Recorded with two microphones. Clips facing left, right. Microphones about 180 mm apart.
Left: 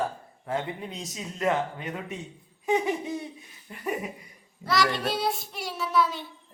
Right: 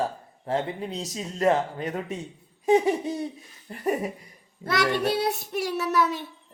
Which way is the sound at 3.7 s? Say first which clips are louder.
Right 5 dB; 40° right (ahead or behind).